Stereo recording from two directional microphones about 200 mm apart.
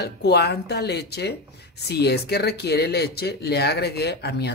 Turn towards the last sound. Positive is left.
turn(degrees=55)  # may be behind; listen again after turning